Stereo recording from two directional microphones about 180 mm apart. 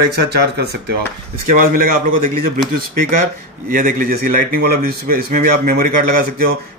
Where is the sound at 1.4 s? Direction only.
50° right (ahead or behind).